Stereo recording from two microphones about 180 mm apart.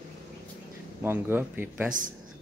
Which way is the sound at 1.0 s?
10° right (ahead or behind).